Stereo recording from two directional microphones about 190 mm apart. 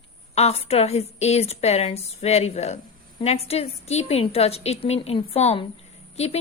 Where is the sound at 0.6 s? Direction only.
35° left (ahead or behind).